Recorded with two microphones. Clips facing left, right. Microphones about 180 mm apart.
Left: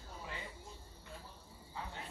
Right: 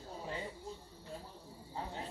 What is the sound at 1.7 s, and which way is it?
Cricket, 35° right (ahead or behind).